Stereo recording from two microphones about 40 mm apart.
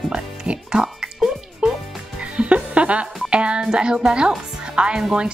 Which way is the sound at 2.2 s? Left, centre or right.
Right.